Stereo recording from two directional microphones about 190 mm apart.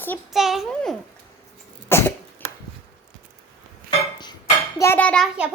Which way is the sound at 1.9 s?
15° left (ahead or behind).